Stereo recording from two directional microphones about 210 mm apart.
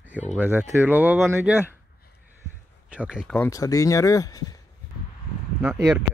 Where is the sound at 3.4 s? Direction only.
15° left (ahead or behind).